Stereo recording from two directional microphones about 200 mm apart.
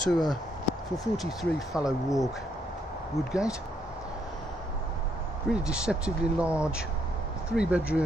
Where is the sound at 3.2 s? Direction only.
Centre (ahead or behind).